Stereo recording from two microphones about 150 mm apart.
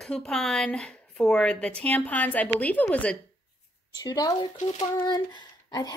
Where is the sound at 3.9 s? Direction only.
25° left (ahead or behind).